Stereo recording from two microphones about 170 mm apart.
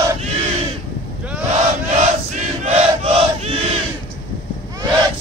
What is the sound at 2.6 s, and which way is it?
Battle cry, 40° right (ahead or behind).